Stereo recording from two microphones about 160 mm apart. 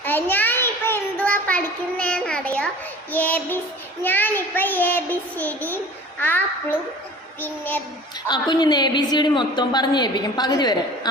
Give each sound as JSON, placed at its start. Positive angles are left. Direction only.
{"t": 0.0, "sound": "child singing", "side_deg": 10}
{"t": 8.3, "sound": "a woman's voice", "side_deg": 25}